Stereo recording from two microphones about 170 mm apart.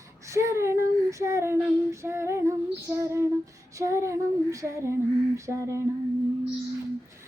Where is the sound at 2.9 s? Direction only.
15° right (ahead or behind).